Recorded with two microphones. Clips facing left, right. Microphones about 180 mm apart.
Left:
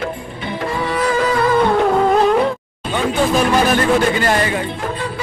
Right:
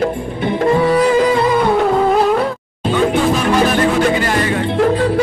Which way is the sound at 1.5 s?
5° right (ahead or behind).